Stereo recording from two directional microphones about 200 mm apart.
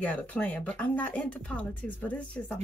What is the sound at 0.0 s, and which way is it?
Speech, 5° left (ahead or behind).